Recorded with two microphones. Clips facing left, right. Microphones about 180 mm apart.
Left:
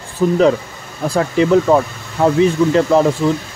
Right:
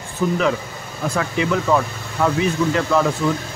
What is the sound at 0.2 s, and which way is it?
Speech, 30° left (ahead or behind).